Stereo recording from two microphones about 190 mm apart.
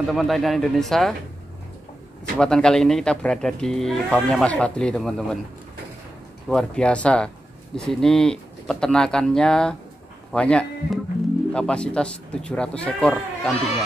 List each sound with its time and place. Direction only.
0.1 s speech: centre (ahead or behind)
2.3 s speech: 5° left (ahead or behind)
6.5 s speech: 5° left (ahead or behind)